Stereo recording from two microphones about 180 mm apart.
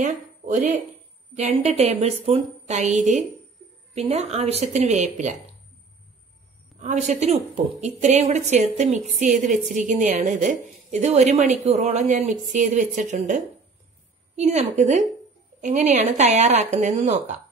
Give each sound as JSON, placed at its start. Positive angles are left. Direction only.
{"t": 0.0, "sound": "a woman's voice", "side_deg": -45}
{"t": 6.8, "sound": "a woman's voice", "side_deg": -40}
{"t": 14.4, "sound": "a woman's voice", "side_deg": -40}